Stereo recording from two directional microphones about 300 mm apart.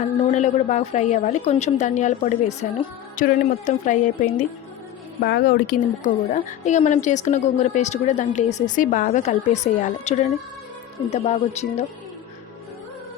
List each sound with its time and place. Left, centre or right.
0.3 s a woman's voice: left